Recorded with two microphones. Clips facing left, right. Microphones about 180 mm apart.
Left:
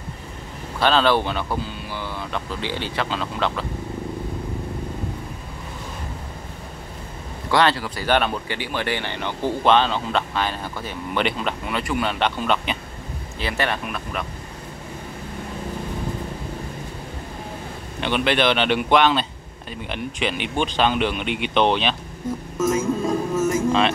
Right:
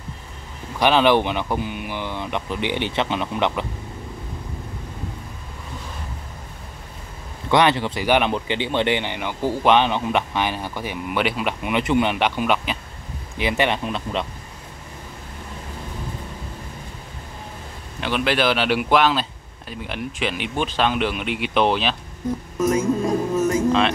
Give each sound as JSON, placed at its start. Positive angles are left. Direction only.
{"t": 0.7, "sound": "speech", "side_deg": -15}
{"t": 7.5, "sound": "speech", "side_deg": -20}
{"t": 18.0, "sound": "speech", "side_deg": 0}
{"t": 23.4, "sound": "music", "side_deg": 5}